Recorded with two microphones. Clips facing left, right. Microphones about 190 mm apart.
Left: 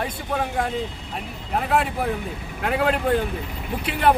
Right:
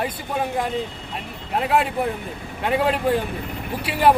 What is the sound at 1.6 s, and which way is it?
Speech, centre (ahead or behind).